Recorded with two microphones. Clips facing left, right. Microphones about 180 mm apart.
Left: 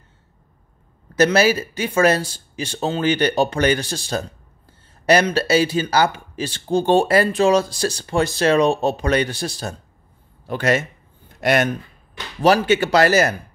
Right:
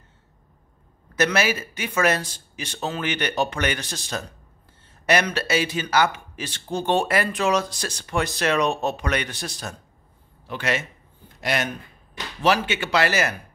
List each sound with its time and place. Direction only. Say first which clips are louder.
1.1 s speech: left 6 dB; 35° left (ahead or behind)
10.4 s a man's voice: left 7 dB; 45° left (ahead or behind)
12.4 s speech: left 6 dB; 40° left (ahead or behind)